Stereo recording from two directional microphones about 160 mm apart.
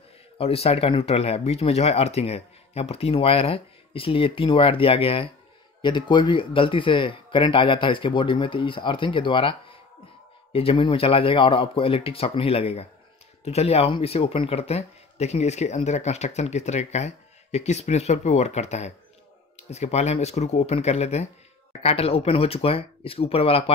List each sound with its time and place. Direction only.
0.4 s speech: 40° left (ahead or behind)